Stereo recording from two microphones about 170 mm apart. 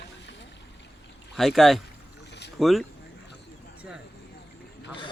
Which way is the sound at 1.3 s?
Centre (ahead or behind).